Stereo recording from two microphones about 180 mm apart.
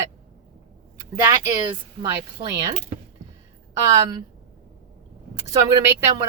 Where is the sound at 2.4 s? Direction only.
20° right (ahead or behind).